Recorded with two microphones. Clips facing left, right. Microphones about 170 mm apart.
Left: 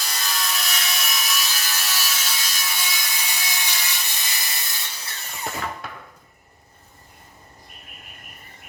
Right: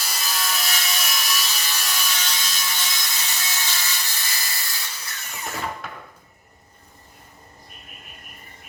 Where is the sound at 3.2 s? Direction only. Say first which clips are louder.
Even; 15° left (ahead or behind).